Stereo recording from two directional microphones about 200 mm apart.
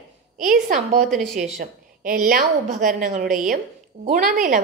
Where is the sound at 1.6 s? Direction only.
45° right (ahead or behind).